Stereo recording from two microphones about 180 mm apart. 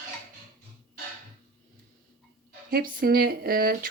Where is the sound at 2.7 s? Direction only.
55° right (ahead or behind).